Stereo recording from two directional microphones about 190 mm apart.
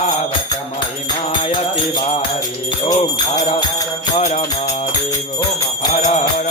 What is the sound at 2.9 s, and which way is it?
Jingle bell, 20° left (ahead or behind).